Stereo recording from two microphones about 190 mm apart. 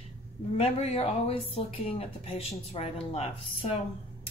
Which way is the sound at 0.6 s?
35° left (ahead or behind).